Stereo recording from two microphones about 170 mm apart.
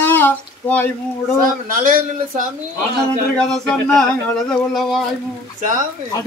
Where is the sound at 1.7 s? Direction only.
55° right (ahead or behind).